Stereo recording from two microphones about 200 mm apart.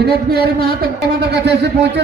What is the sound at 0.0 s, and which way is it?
Speech, 50° right (ahead or behind).